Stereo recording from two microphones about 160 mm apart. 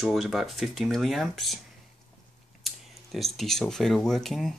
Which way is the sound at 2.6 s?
Centre (ahead or behind).